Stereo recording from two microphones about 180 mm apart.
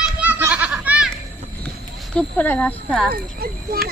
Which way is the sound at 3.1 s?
55° right (ahead or behind).